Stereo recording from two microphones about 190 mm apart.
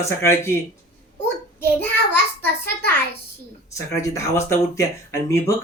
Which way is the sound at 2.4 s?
10° left (ahead or behind).